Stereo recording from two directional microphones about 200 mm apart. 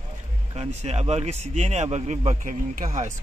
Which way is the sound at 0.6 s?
35° right (ahead or behind).